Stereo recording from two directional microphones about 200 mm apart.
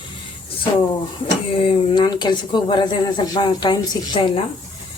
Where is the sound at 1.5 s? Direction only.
25° left (ahead or behind).